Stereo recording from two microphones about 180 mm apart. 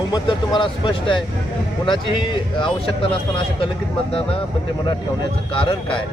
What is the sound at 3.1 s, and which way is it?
Speech, 30° left (ahead or behind).